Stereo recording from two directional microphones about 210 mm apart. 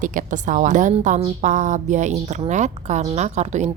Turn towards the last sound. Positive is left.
turn(degrees=-35)  # may be behind; listen again after turning